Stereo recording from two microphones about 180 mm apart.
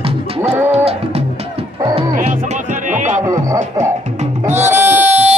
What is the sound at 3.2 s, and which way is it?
Music, 15° right (ahead or behind).